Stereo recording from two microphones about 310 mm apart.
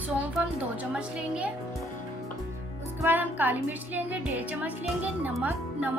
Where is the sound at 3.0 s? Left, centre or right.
Centre.